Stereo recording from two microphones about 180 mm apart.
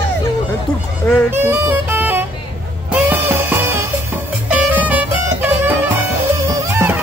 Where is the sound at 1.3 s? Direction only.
15° right (ahead or behind).